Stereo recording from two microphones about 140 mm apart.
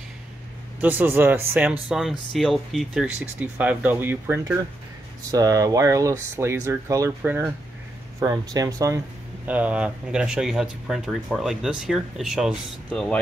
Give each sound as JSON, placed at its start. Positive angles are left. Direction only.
{"t": 0.7, "sound": "speech", "side_deg": -15}
{"t": 9.5, "sound": "speech", "side_deg": -10}